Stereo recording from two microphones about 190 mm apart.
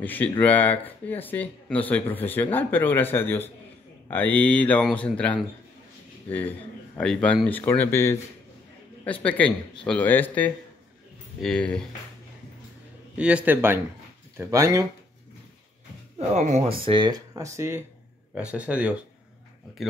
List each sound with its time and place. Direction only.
0.0 s speech: 10° left (ahead or behind)
9.2 s speech: 5° left (ahead or behind)
13.2 s speech: 5° right (ahead or behind)
16.2 s speech: 35° right (ahead or behind)
16.8 s speech: 25° right (ahead or behind); by 18.9 s 5° right (ahead or behind)